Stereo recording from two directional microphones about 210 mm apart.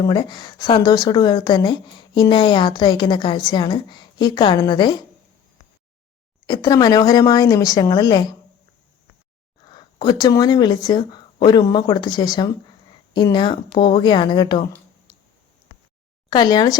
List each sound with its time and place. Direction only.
0.0 s a woman's voice: 20° left (ahead or behind)
6.5 s a woman's voice: 20° left (ahead or behind)
9.6 s a woman's voice: 20° left (ahead or behind)
16.3 s a woman's voice: 20° left (ahead or behind)